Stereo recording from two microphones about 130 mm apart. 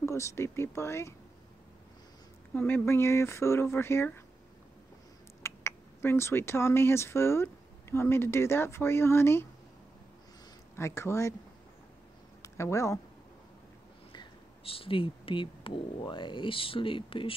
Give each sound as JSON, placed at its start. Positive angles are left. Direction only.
{"t": 0.0, "sound": "speech", "side_deg": 20}
{"t": 2.5, "sound": "speech", "side_deg": 15}
{"t": 5.4, "sound": "speech", "side_deg": 20}
{"t": 10.8, "sound": "speech", "side_deg": 20}
{"t": 12.4, "sound": "speech", "side_deg": 20}
{"t": 14.1, "sound": "speech", "side_deg": 45}